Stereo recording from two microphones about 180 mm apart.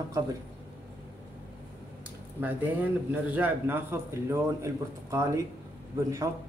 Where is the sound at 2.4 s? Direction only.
10° right (ahead or behind).